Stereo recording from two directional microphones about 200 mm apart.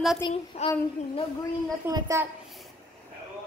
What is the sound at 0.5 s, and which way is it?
Child singing, 30° left (ahead or behind).